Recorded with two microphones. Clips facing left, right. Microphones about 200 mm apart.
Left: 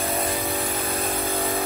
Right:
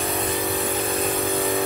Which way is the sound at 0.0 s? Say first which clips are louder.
Right 1 dB; centre (ahead or behind).